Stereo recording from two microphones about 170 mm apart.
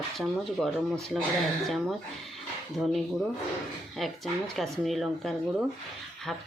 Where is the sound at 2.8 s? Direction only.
5° right (ahead or behind).